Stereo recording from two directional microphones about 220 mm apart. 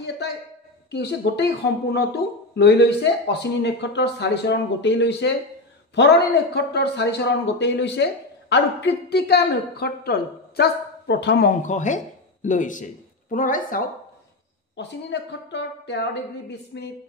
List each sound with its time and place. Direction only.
0.9 s a man's voice: 50° left (ahead or behind)
11.6 s a woman's voice: 35° left (ahead or behind)
14.8 s a man's voice: 50° left (ahead or behind)